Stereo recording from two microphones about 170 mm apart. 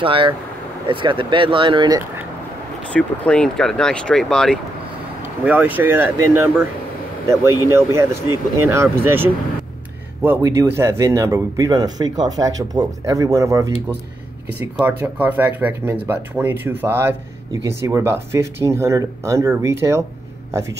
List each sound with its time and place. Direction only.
0.0 s speech: 30° right (ahead or behind)
2.9 s speech: 5° left (ahead or behind)
5.2 s speech: 10° right (ahead or behind)
14.8 s speech: 10° right (ahead or behind)